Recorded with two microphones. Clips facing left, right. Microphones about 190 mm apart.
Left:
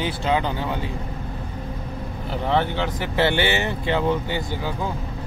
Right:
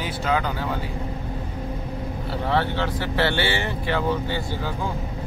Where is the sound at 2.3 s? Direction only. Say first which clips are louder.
Left 2 dB; 20° left (ahead or behind).